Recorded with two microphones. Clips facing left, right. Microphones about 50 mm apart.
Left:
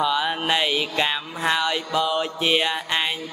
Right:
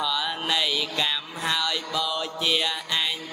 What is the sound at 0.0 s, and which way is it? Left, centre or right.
Music, left.